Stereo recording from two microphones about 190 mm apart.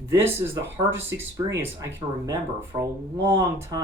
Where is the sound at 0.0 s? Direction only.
15° right (ahead or behind).